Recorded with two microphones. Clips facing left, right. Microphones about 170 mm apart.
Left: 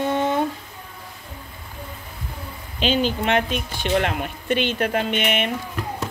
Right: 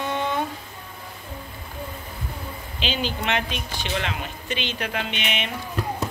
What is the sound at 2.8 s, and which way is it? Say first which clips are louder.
A woman's voice: left 7 dB; 45° left (ahead or behind).